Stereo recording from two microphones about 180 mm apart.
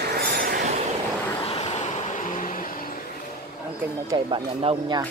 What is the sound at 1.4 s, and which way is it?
Vehicle, 35° left (ahead or behind).